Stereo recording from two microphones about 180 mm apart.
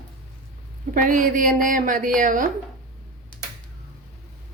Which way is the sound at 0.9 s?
50° right (ahead or behind).